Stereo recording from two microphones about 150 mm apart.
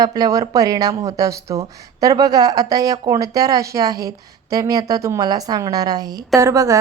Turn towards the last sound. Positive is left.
turn(degrees=-20)  # may be behind; listen again after turning